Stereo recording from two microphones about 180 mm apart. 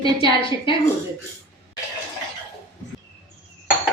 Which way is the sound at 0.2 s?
30° left (ahead or behind).